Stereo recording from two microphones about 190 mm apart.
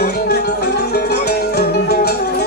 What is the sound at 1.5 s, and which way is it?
Music, 55° left (ahead or behind).